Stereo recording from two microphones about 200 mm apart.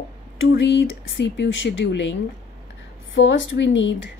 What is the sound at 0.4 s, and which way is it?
Speech, 65° left (ahead or behind).